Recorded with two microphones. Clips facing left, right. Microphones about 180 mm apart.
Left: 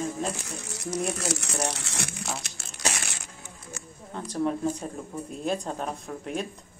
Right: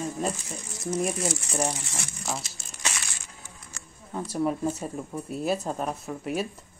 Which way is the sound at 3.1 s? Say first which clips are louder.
Left 3 dB; 65° left (ahead or behind).